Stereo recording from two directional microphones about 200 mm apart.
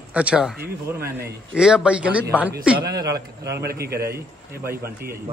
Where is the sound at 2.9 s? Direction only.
20° right (ahead or behind).